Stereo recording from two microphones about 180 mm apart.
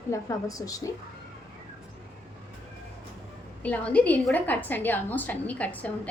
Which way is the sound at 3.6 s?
5° left (ahead or behind).